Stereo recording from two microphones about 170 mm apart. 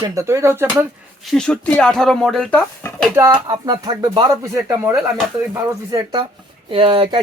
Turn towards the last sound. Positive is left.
turn(degrees=-30)  # may be behind; listen again after turning